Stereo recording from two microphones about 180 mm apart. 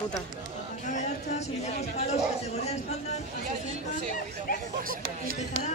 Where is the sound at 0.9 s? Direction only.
40° left (ahead or behind).